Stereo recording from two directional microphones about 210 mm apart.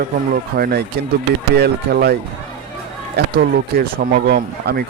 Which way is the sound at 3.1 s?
45° right (ahead or behind).